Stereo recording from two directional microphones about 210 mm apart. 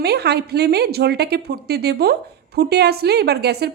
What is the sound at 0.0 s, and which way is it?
A woman's voice, 50° right (ahead or behind).